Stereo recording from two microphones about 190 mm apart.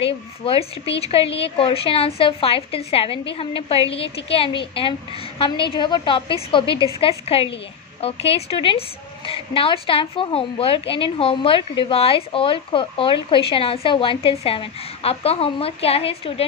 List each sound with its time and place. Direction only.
0.0 s a woman's voice: 30° left (ahead or behind)